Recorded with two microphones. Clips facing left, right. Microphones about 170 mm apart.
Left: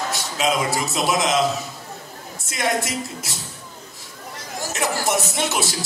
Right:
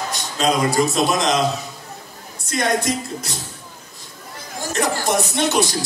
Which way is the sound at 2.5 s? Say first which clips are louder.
Right 3 dB; 5° left (ahead or behind).